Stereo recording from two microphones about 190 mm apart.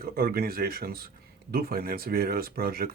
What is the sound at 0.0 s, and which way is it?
Speech, 55° right (ahead or behind).